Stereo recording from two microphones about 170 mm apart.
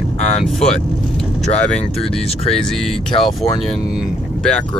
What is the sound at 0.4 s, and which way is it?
Speech, centre (ahead or behind).